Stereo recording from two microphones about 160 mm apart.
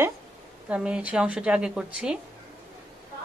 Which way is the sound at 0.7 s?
5° right (ahead or behind).